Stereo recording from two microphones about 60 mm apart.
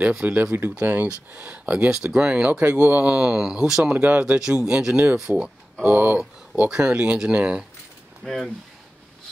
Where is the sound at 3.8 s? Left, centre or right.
Right.